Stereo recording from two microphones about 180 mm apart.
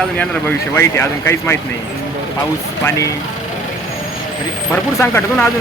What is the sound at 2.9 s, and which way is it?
Speech, 20° left (ahead or behind).